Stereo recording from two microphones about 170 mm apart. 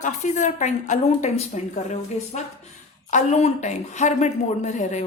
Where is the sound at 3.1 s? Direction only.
45° left (ahead or behind).